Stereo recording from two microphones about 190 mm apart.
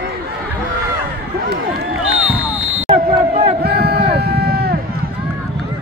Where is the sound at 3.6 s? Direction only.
55° right (ahead or behind).